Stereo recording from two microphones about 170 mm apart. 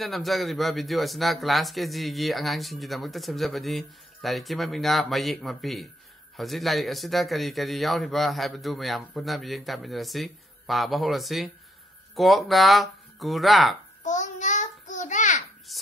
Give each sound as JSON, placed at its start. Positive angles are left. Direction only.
{"t": 0.0, "sound": "speech", "side_deg": 0}
{"t": 14.0, "sound": "child singing", "side_deg": 45}
{"t": 15.7, "sound": "a sound", "side_deg": 0}